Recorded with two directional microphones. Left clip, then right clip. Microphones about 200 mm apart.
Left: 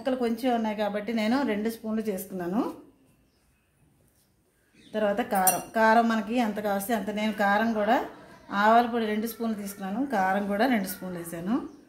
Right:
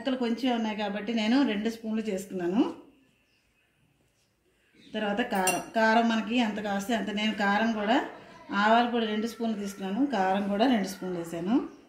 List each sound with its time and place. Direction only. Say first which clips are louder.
0.0 s a woman's voice: left 2 dB; 30° left (ahead or behind)
4.9 s a woman's voice: left 3 dB; 25° left (ahead or behind)